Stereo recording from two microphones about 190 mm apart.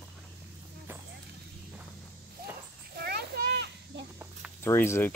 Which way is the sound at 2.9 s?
55° right (ahead or behind).